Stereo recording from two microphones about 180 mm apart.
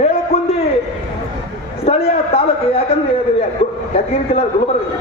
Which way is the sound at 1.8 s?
35° left (ahead or behind).